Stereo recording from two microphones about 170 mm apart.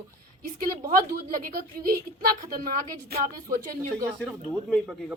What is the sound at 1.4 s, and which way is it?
A woman's voice, 55° right (ahead or behind).